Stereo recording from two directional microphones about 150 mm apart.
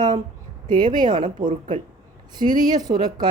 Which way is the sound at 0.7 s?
30° right (ahead or behind).